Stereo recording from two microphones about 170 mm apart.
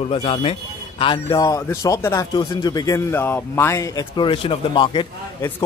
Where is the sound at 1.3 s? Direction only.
20° left (ahead or behind).